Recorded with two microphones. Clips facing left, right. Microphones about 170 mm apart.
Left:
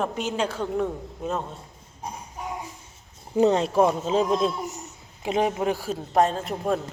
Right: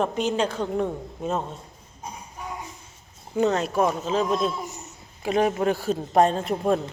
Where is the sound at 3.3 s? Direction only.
30° left (ahead or behind).